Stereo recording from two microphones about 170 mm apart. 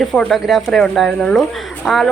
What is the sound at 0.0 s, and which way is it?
A woman's voice, centre (ahead or behind).